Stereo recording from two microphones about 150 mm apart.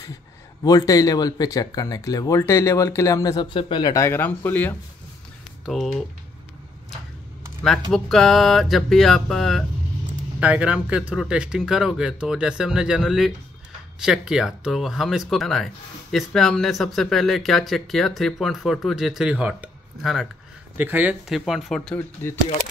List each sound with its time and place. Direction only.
0.7 s speech: 25° left (ahead or behind)
3.9 s speech: 15° left (ahead or behind)
7.9 s speech: centre (ahead or behind)
10.4 s speech: 10° right (ahead or behind)
20.7 s speech: 10° right (ahead or behind); by 22.0 s 5° left (ahead or behind)